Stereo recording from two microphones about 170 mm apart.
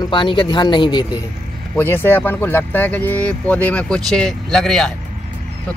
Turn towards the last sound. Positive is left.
turn(degrees=0)  # may be behind; listen again after turning